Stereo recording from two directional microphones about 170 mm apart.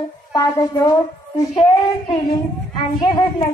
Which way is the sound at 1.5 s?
35° left (ahead or behind).